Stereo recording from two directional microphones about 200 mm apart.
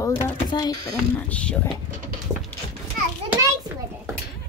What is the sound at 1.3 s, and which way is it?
Speech, 5° left (ahead or behind).